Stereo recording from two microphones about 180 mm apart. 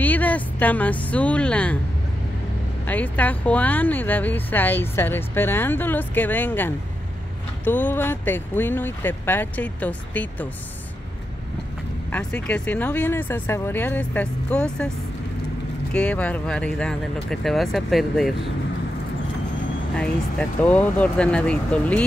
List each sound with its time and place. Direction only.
0.0 s speech: 10° left (ahead or behind)
2.9 s speech: 10° left (ahead or behind)
12.1 s speech: 5° left (ahead or behind)
15.9 s speech: 5° left (ahead or behind)
20.0 s speech: 5° left (ahead or behind)